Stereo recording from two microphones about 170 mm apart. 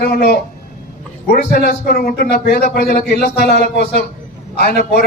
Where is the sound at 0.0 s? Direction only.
65° left (ahead or behind).